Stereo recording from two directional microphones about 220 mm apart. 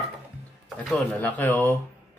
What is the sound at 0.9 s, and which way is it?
Speech, 5° left (ahead or behind).